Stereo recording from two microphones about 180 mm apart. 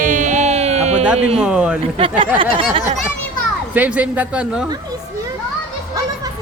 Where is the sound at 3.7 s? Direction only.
10° right (ahead or behind).